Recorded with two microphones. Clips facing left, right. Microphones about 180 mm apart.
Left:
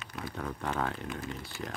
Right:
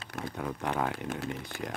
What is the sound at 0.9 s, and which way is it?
Speech, 80° right.